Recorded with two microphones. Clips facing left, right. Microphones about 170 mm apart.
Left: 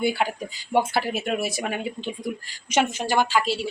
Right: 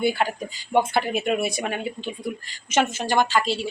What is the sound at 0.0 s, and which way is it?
Speech, 10° left (ahead or behind).